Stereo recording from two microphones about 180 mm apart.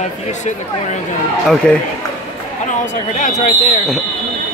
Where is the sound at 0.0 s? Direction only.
40° left (ahead or behind).